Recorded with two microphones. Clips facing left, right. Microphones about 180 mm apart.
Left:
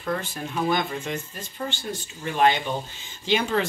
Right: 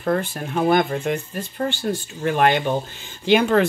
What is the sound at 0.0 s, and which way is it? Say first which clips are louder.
Speech: right 6 dB; 55° right (ahead or behind).